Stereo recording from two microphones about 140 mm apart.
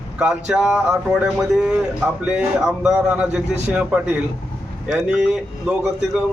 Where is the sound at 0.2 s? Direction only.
5° right (ahead or behind).